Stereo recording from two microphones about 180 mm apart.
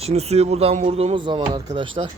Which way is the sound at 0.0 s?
35° right (ahead or behind).